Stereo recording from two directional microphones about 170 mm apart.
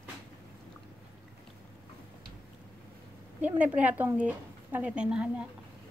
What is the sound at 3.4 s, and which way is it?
A woman's voice, 10° right (ahead or behind).